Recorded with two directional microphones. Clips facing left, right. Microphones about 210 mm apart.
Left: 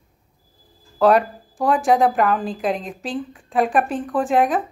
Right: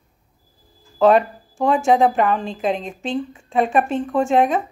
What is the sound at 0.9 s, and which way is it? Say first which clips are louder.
A woman's voice: right 1 dB; centre (ahead or behind).